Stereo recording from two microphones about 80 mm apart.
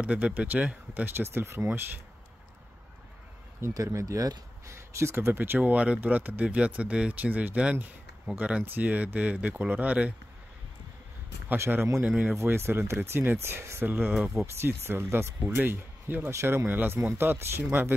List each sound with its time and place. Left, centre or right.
0.0 s speech: centre; by 1.7 s right
3.7 s speech: right
4.7 s speech: right; by 10.1 s centre
11.4 s speech: right